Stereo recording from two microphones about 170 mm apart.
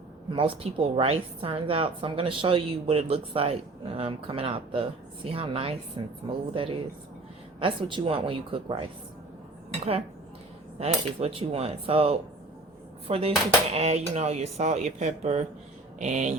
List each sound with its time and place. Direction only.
0.3 s a woman's voice: 30° right (ahead or behind)
10.8 s a woman's voice: 35° right (ahead or behind)